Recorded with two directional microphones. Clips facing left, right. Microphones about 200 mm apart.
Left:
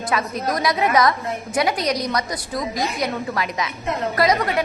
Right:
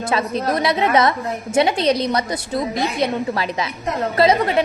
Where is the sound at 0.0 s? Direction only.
30° right (ahead or behind).